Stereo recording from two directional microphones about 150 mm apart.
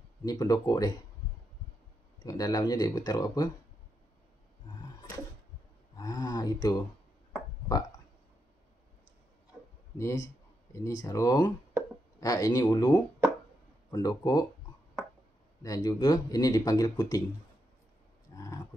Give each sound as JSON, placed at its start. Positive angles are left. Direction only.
{"t": 0.2, "sound": "speech", "side_deg": 25}
{"t": 2.2, "sound": "speech", "side_deg": 25}
{"t": 5.9, "sound": "speech", "side_deg": 25}
{"t": 9.9, "sound": "speech", "side_deg": 20}
{"t": 15.6, "sound": "speech", "side_deg": 25}
{"t": 18.3, "sound": "a sound", "side_deg": 25}